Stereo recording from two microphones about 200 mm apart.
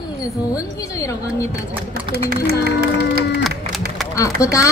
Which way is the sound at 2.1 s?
50° right (ahead or behind).